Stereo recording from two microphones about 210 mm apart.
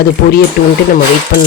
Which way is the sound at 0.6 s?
45° left (ahead or behind).